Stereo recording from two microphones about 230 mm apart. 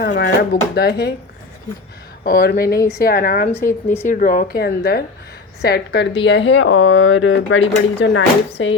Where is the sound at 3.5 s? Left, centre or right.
Centre.